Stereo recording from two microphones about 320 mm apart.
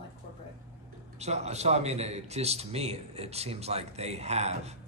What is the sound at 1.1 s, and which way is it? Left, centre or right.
A man's voice, right.